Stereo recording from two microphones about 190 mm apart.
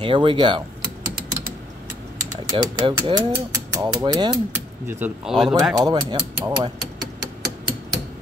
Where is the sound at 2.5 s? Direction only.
25° right (ahead or behind).